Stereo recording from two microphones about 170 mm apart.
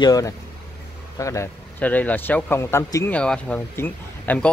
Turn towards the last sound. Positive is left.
turn(degrees=10)  # may be behind; listen again after turning